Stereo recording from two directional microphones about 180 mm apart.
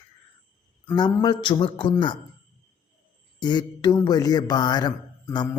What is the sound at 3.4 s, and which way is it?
Speech, 25° left (ahead or behind).